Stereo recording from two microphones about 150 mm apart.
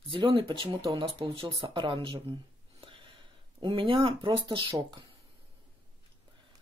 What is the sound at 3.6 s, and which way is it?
Speech, 35° right (ahead or behind).